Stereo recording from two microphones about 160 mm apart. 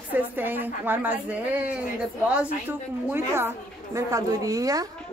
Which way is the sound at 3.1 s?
15° right (ahead or behind).